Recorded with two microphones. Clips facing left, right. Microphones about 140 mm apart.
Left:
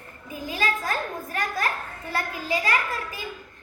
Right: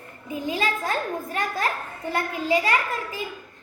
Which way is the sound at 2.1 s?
30° right (ahead or behind).